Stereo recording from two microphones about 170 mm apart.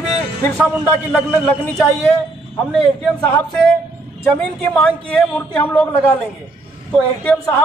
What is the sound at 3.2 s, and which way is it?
Speech, 10° left (ahead or behind).